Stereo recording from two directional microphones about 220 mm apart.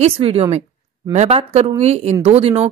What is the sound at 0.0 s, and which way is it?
A woman's voice, 25° right (ahead or behind).